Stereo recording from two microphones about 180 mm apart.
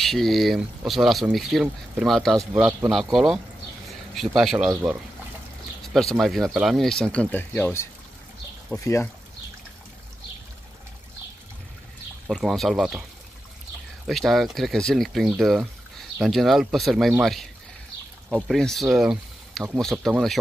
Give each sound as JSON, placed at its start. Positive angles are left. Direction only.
{"t": 0.0, "sound": "speech", "side_deg": 0}
{"t": 6.1, "sound": "speech", "side_deg": 0}
{"t": 12.3, "sound": "speech", "side_deg": 0}
{"t": 14.0, "sound": "speech", "side_deg": 0}
{"t": 18.9, "sound": "a sound", "side_deg": 0}
{"t": 19.7, "sound": "speech", "side_deg": 0}